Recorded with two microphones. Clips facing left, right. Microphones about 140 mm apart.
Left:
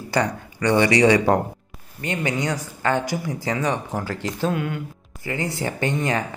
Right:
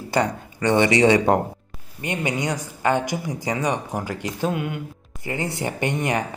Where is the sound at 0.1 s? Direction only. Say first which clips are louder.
Right 1 dB; 20° right (ahead or behind).